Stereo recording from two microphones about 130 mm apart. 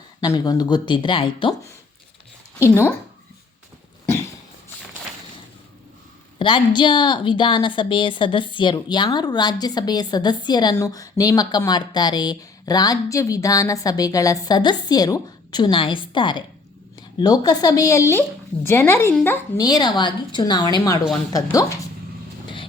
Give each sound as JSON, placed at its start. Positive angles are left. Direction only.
{"t": 0.2, "sound": "a woman's voice", "side_deg": 30}
{"t": 2.6, "sound": "a woman's voice", "side_deg": 20}
{"t": 6.4, "sound": "a woman's voice", "side_deg": 40}